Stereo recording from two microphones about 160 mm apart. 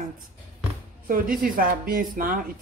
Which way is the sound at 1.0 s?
60° right (ahead or behind).